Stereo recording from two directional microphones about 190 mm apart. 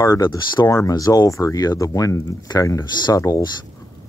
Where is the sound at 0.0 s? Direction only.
15° left (ahead or behind).